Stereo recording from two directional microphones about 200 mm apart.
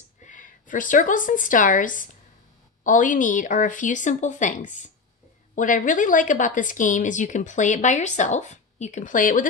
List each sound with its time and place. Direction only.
0.2 s a woman's voice: 40° left (ahead or behind)